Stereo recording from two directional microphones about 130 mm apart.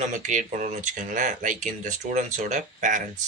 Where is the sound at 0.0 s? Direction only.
65° right (ahead or behind).